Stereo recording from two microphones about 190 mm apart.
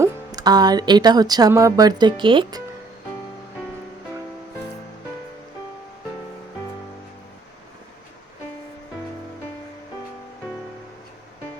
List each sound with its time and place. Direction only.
0.0 s speech: 20° right (ahead or behind)